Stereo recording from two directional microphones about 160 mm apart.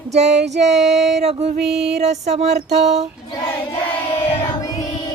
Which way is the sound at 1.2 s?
45° right (ahead or behind).